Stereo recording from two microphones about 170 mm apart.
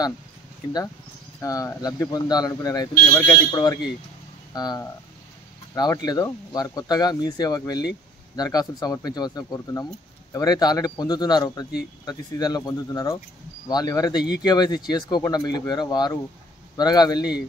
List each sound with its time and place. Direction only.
1.4 s speech: 20° left (ahead or behind)